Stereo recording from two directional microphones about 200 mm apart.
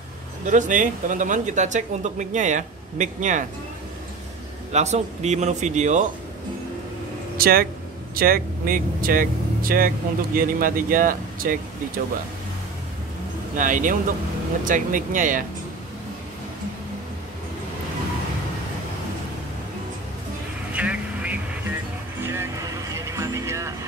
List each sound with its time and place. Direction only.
0.5 s speech: 40° right (ahead or behind)
4.7 s speech: 35° right (ahead or behind)
7.3 s speech: 50° right (ahead or behind)
13.6 s speech: 40° right (ahead or behind)
20.7 s vehicle: 5° right (ahead or behind)
22.2 s music: 15° right (ahead or behind)